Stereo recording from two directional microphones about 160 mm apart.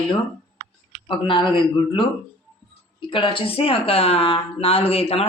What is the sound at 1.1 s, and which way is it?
Speech, 30° left (ahead or behind).